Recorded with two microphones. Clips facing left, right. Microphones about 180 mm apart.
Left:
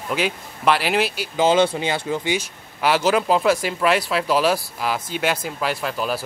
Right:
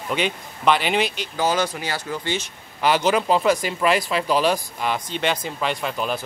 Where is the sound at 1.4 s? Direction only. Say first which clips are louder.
Left 5 dB; 25° left (ahead or behind).